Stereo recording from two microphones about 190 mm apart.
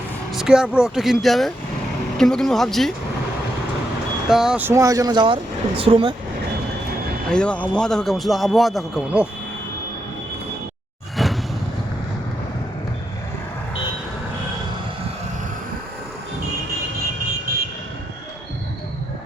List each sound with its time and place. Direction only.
0.3 s speech: 5° right (ahead or behind)
4.3 s speech: 5° right (ahead or behind); by 6.1 s 30° right (ahead or behind)
7.3 s speech: 5° left (ahead or behind)
11.2 s vehicle: centre (ahead or behind)